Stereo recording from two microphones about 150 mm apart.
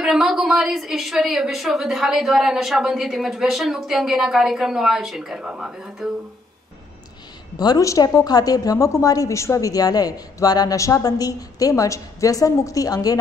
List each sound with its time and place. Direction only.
0.0 s a woman's voice: centre (ahead or behind)
7.5 s a woman's voice: 25° left (ahead or behind)